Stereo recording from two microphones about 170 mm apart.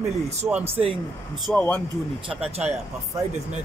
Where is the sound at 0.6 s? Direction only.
35° right (ahead or behind).